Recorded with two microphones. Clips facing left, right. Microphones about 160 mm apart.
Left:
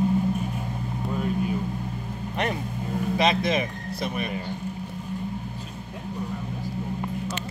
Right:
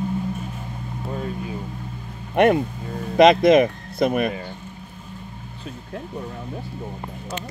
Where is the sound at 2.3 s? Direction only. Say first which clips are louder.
Right 12 dB; 60° right (ahead or behind).